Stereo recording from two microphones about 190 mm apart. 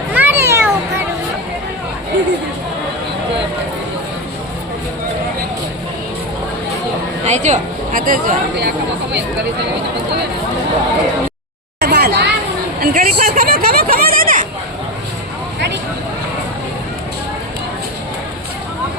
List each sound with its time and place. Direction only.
0.1 s children playing: 10° right (ahead or behind)
7.3 s a woman's voice: 40° right (ahead or behind)
11.8 s a sound: 55° right (ahead or behind)